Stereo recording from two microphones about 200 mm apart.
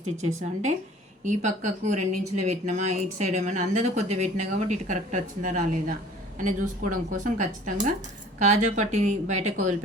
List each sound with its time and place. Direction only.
1.2 s speech: 35° right (ahead or behind)